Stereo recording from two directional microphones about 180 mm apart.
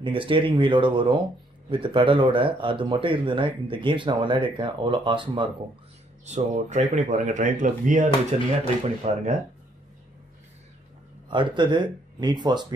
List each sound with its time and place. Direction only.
0.0 s speech: 30° right (ahead or behind)
6.2 s speech: 40° right (ahead or behind)
11.2 s speech: 25° right (ahead or behind)